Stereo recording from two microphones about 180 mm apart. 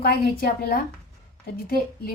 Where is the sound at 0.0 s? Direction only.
55° left (ahead or behind).